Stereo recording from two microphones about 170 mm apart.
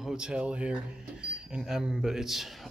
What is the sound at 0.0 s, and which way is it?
Speech, 5° right (ahead or behind).